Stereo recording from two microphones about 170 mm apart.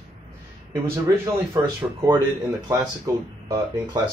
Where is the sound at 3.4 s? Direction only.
25° right (ahead or behind).